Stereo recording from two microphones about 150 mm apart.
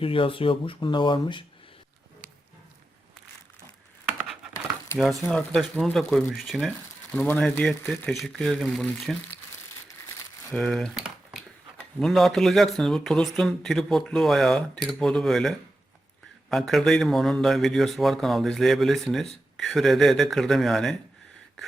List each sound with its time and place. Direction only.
0.0 s speech: 35° left (ahead or behind)
4.9 s speech: 5° left (ahead or behind)
10.5 s speech: 5° left (ahead or behind)
11.0 s a sound: 5° right (ahead or behind)
11.9 s speech: centre (ahead or behind)